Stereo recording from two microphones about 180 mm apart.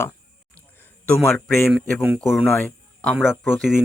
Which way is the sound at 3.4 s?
Centre (ahead or behind).